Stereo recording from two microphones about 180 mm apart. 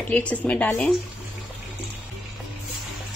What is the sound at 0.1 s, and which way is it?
Speech, 5° left (ahead or behind).